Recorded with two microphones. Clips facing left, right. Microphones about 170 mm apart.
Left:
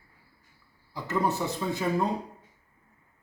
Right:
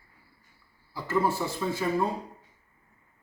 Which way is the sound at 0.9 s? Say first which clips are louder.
Right 1 dB; 20° left (ahead or behind).